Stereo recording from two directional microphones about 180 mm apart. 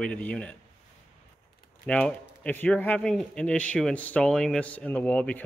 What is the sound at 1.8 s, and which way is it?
Speech, 5° left (ahead or behind).